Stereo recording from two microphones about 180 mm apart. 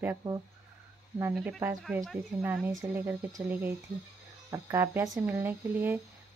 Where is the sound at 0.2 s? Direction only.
20° right (ahead or behind).